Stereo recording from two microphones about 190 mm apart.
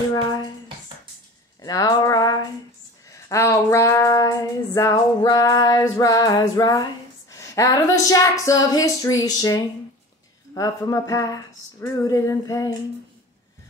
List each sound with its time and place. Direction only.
0.1 s music: 20° left (ahead or behind)
1.6 s a sound: 20° left (ahead or behind)
3.1 s female singing: 15° left (ahead or behind)